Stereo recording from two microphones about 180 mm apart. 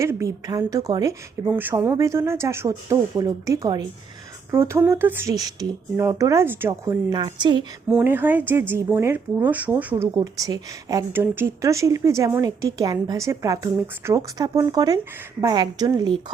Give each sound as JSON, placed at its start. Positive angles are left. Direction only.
{"t": 0.0, "sound": "speech", "side_deg": -15}
{"t": 7.9, "sound": "a woman's voice", "side_deg": -10}